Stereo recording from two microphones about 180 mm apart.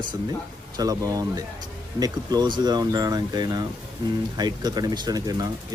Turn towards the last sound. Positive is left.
turn(degrees=-20)  # may be behind; listen again after turning